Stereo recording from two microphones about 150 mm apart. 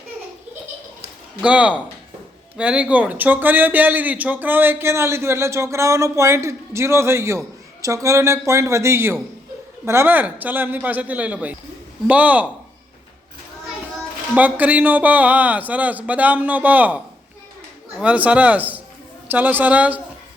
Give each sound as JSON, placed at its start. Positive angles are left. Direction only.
{"t": 1.4, "sound": "speech", "side_deg": -10}
{"t": 14.3, "sound": "speech", "side_deg": -10}